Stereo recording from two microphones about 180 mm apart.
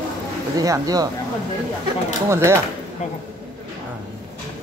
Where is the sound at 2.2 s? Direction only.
15° right (ahead or behind).